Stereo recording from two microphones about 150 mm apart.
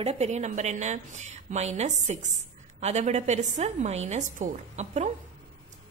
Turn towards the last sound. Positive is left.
turn(degrees=-50)  # may be behind; listen again after turning